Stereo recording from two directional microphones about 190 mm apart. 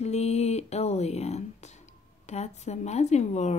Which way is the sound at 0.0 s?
35° left (ahead or behind).